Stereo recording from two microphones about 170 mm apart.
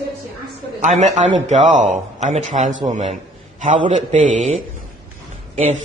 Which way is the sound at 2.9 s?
45° right (ahead or behind).